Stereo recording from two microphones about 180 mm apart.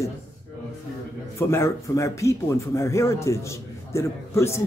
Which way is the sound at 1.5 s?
15° left (ahead or behind).